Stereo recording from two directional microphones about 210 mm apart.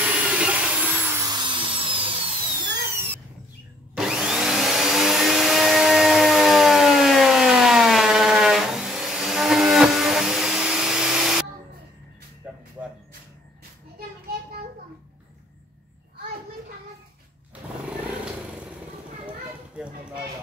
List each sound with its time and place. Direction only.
0.0 s vacuum cleaner: 5° right (ahead or behind); by 2.3 s 25° right (ahead or behind)
3.9 s vacuum cleaner: centre (ahead or behind)
12.4 s a sound: 5° right (ahead or behind)